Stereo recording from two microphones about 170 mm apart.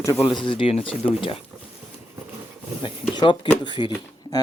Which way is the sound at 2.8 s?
30° left (ahead or behind).